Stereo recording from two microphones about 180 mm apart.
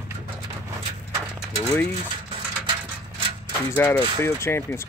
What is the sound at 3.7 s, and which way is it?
Speech, 10° left (ahead or behind).